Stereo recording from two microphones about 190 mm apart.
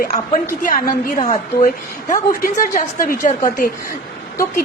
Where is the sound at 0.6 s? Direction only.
45° left (ahead or behind).